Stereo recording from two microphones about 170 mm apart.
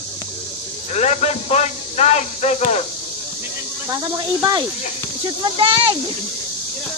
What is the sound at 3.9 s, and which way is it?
Speech, 25° right (ahead or behind).